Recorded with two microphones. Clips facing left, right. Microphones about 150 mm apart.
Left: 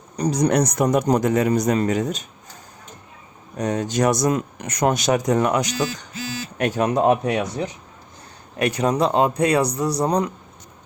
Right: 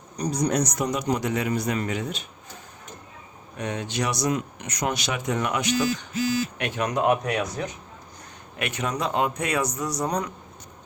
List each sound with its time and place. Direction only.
0.2 s speech: 90° left; by 2.2 s 40° left (ahead or behind)
3.6 s speech: 40° left (ahead or behind)